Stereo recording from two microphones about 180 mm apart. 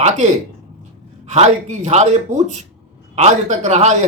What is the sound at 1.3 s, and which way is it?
Speech, 40° right (ahead or behind).